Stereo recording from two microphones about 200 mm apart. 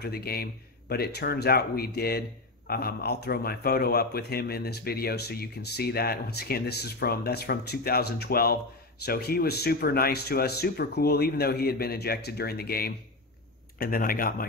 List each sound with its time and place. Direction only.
0.0 s speech: 50° left (ahead or behind)